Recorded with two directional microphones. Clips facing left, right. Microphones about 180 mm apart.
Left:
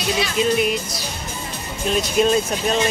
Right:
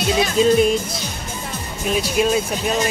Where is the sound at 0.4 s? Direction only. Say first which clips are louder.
Right 5 dB; 30° right (ahead or behind).